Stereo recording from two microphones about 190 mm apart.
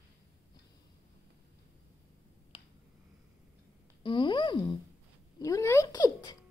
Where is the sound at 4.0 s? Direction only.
25° left (ahead or behind).